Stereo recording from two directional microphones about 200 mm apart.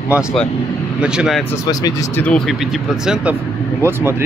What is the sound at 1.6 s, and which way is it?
Speech, 20° left (ahead or behind).